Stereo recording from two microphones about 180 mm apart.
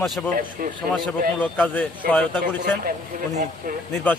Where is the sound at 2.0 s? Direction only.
55° right (ahead or behind).